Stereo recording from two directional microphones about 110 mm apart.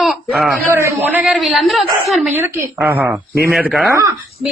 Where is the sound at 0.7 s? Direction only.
25° right (ahead or behind).